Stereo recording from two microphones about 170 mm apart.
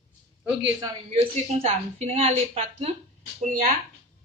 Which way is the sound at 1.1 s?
35° right (ahead or behind).